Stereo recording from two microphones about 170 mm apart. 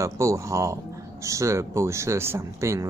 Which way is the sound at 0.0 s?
15° right (ahead or behind).